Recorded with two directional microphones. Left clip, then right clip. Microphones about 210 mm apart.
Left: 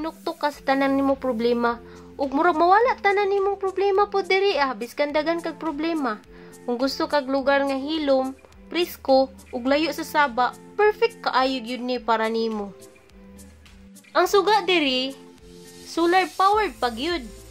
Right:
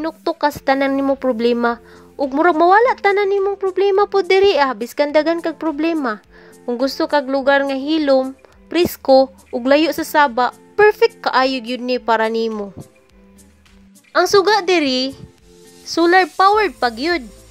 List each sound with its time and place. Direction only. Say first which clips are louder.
0.0 s speech: right 8 dB; 35° right (ahead or behind)
14.1 s speech: right 5 dB; 25° right (ahead or behind)